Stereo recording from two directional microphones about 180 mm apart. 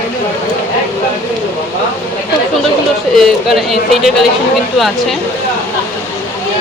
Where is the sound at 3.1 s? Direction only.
Centre (ahead or behind).